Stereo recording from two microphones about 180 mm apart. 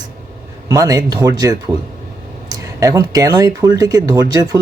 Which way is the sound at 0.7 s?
20° right (ahead or behind).